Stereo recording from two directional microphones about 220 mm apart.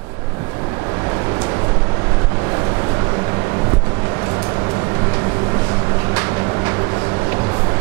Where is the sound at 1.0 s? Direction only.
20° right (ahead or behind).